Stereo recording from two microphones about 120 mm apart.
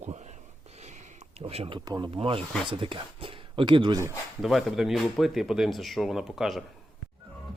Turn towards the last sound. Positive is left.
turn(degrees=0)  # may be behind; listen again after turning